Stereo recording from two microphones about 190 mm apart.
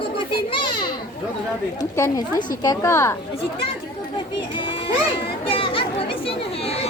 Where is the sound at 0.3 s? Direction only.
25° left (ahead or behind).